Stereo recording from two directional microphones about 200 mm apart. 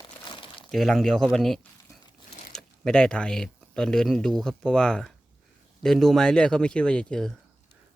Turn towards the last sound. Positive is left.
turn(degrees=5)  # may be behind; listen again after turning